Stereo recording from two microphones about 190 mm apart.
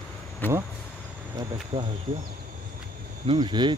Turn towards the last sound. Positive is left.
turn(degrees=-25)  # may be behind; listen again after turning